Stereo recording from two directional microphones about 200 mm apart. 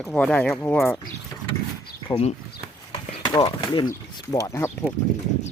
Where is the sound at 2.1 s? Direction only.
30° left (ahead or behind); by 4.7 s 15° left (ahead or behind).